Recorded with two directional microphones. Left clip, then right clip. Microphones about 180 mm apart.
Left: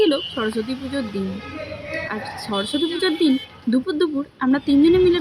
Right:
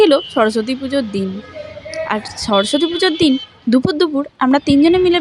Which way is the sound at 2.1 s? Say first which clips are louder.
Right 8 dB; 40° right (ahead or behind).